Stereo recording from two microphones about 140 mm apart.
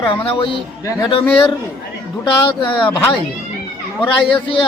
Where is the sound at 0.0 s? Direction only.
35° left (ahead or behind).